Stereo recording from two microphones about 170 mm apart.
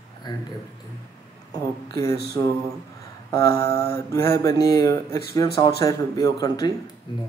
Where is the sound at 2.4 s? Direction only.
25° left (ahead or behind).